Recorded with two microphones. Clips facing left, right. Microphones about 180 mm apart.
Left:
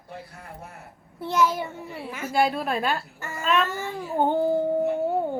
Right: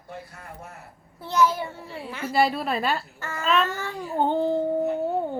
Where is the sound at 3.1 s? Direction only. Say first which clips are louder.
Right 1 dB; 15° left (ahead or behind).